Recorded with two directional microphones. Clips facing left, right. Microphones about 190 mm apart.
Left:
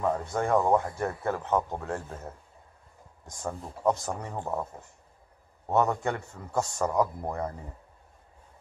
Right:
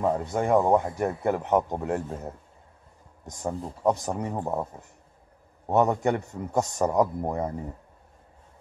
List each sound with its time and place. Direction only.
0.0 s a man's voice: 20° right (ahead or behind)
5.7 s a man's voice: 20° right (ahead or behind)